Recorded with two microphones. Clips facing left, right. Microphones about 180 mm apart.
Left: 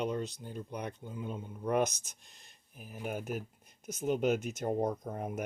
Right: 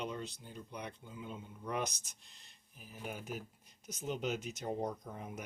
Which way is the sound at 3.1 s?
50° left (ahead or behind).